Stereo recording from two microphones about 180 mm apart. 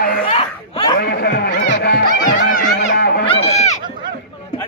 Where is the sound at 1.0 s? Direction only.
65° left (ahead or behind).